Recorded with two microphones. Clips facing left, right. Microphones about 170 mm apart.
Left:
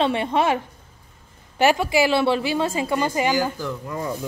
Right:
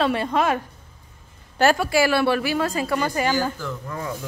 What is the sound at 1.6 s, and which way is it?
A woman's voice, 15° left (ahead or behind).